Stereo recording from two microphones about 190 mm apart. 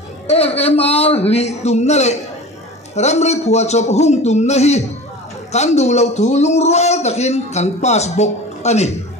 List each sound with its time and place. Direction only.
0.3 s a man's voice: 30° left (ahead or behind)